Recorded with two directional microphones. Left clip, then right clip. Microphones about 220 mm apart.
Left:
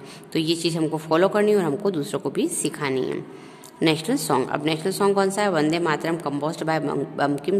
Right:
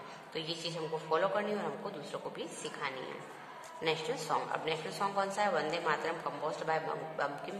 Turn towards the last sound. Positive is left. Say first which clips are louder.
# left 13 dB
turn(degrees=50)  # may be behind; listen again after turning